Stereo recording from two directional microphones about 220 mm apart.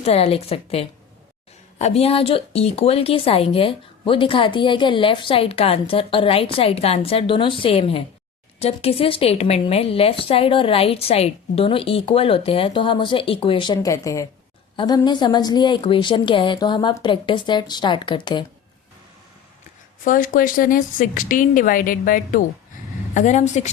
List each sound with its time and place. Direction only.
0.0 s speech: 25° left (ahead or behind)
20.1 s speech: 35° left (ahead or behind)